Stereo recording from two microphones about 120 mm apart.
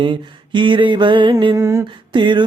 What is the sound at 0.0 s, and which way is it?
Mantra, 45° right (ahead or behind).